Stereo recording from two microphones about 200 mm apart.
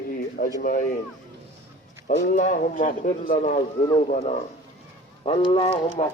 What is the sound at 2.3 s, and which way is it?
A man's voice, 40° left (ahead or behind).